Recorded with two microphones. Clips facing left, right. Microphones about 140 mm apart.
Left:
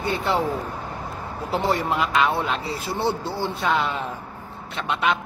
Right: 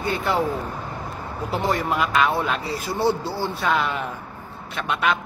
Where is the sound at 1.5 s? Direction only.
30° left (ahead or behind).